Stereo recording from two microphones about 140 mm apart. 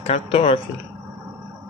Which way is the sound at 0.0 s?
40° left (ahead or behind).